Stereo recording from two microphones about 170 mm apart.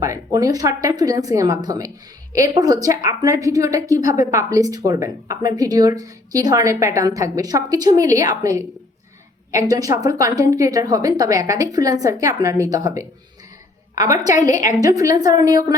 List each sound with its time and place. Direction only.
0.0 s a woman's voice: 20° right (ahead or behind)